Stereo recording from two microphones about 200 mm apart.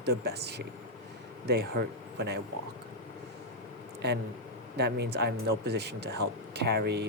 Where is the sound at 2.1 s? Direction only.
55° right (ahead or behind).